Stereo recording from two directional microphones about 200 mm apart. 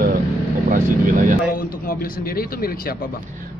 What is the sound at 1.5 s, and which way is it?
A man's voice, 45° left (ahead or behind).